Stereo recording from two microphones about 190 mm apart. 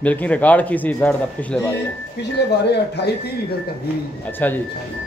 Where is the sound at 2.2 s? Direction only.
60° left (ahead or behind).